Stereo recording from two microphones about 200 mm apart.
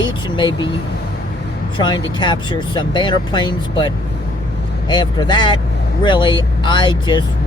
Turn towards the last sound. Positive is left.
turn(degrees=25)  # may be behind; listen again after turning